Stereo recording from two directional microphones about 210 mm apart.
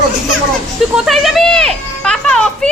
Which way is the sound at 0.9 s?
Centre (ahead or behind).